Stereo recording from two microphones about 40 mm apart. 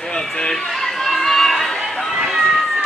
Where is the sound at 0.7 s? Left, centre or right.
Centre.